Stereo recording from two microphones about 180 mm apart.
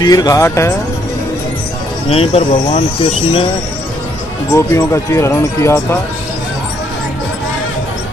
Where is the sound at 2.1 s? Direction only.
35° left (ahead or behind).